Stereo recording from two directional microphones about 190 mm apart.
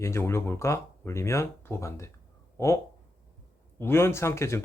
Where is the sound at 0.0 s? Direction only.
15° left (ahead or behind).